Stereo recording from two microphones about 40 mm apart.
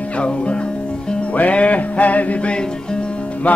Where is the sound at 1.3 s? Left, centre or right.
Left.